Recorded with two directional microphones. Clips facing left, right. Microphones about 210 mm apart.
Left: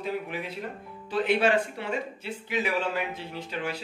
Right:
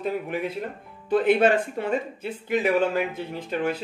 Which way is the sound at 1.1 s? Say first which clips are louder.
Right 5 dB; 50° right (ahead or behind).